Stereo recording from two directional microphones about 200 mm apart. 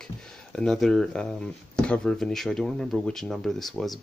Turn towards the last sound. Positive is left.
turn(degrees=0)  # may be behind; listen again after turning